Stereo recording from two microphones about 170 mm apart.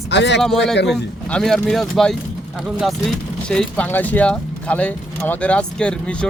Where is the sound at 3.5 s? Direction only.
5° left (ahead or behind).